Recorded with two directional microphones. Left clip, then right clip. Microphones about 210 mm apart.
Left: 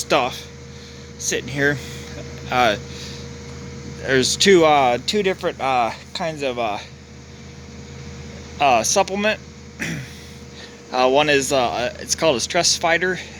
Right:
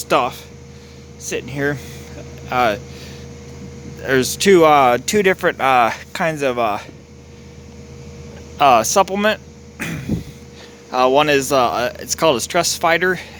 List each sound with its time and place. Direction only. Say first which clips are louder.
0.0 s speech: right 2 dB; 10° right (ahead or behind)
8.5 s speech: right 4 dB; 20° right (ahead or behind)